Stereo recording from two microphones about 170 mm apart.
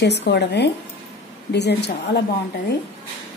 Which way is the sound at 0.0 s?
85° left.